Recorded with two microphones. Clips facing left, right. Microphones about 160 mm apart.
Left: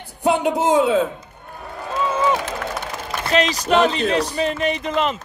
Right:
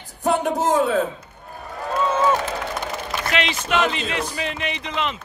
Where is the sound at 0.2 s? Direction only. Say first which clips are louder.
Left 2 dB; 15° left (ahead or behind).